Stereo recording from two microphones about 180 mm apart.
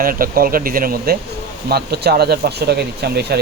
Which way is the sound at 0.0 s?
50° right (ahead or behind).